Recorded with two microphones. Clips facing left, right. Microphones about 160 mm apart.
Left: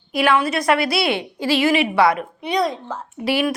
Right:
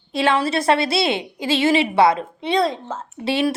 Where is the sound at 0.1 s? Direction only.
25° right (ahead or behind).